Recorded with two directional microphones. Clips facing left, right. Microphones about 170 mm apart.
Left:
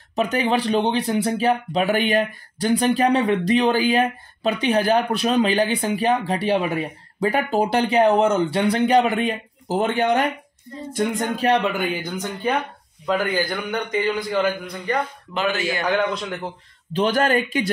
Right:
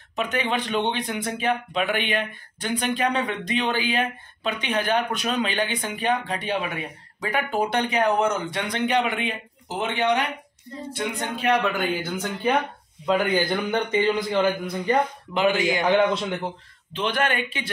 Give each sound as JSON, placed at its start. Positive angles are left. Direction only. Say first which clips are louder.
{"t": 0.1, "sound": "speech", "louder": "left 5 dB", "side_deg": 35}
{"t": 11.6, "sound": "speech", "louder": "left 1 dB", "side_deg": 15}
{"t": 13.2, "sound": "a man's voice", "louder": "right 1 dB", "side_deg": -20}
{"t": 16.9, "sound": "speech", "louder": "left 6 dB", "side_deg": 40}